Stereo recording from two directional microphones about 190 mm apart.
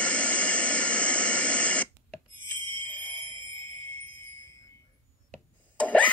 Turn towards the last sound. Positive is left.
turn(degrees=5)  # may be behind; listen again after turning